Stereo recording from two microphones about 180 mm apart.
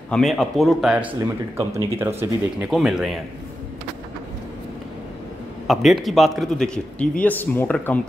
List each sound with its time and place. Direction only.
0.1 s a man's voice: centre (ahead or behind)
1.2 s speech: 15° right (ahead or behind)
2.7 s a man's voice: centre (ahead or behind)
5.7 s a man's voice: centre (ahead or behind)